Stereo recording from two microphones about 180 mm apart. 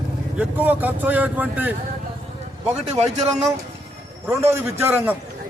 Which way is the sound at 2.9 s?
35° right (ahead or behind).